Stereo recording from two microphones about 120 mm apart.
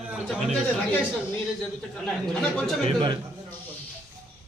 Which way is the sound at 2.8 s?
40° right (ahead or behind).